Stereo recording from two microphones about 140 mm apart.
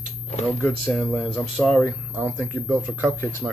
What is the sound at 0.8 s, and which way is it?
Speech, 15° left (ahead or behind).